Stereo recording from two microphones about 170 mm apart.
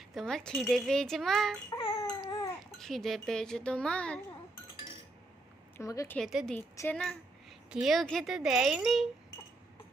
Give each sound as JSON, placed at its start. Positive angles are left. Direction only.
{"t": 0.1, "sound": "a child's voice", "side_deg": 0}
{"t": 1.9, "sound": "baby cry", "side_deg": 20}
{"t": 2.6, "sound": "a child's voice", "side_deg": 0}
{"t": 5.7, "sound": "speech", "side_deg": 20}
{"t": 6.1, "sound": "a child's voice", "side_deg": 0}